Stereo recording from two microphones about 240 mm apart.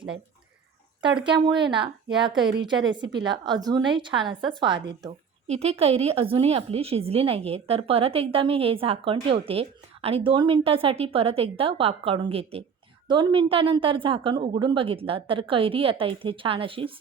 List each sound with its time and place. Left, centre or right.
1.2 s a woman's voice: centre